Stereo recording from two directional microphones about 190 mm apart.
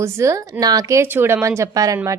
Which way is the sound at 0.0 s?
15° right (ahead or behind).